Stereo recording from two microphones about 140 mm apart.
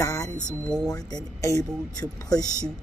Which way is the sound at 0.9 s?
25° left (ahead or behind).